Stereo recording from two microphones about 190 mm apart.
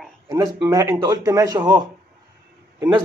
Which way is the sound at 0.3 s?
20° right (ahead or behind).